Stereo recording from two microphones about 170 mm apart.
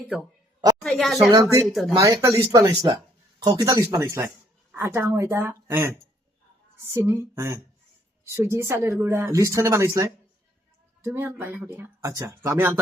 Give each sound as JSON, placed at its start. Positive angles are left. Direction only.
{"t": 0.1, "sound": "speech", "side_deg": 0}
{"t": 1.3, "sound": "speech", "side_deg": -20}
{"t": 1.6, "sound": "speech", "side_deg": 0}
{"t": 2.0, "sound": "speech", "side_deg": -20}
{"t": 6.9, "sound": "speech", "side_deg": -15}
{"t": 11.0, "sound": "speech", "side_deg": -15}